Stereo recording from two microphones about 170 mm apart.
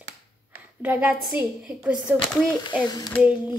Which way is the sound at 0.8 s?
10° right (ahead or behind).